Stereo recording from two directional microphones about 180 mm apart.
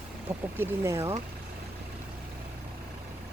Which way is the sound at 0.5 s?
15° right (ahead or behind).